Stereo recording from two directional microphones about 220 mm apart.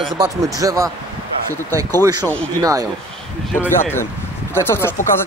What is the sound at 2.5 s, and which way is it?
Speech, 15° right (ahead or behind).